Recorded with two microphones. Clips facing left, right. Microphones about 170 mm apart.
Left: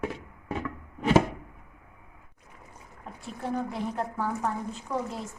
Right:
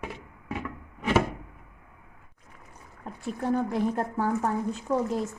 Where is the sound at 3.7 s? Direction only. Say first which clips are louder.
Right 4 dB; 45° right (ahead or behind).